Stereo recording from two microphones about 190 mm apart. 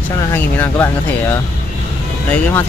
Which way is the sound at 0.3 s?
10° left (ahead or behind).